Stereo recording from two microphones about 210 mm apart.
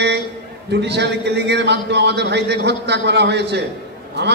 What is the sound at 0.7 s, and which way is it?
A man's voice, 55° right (ahead or behind).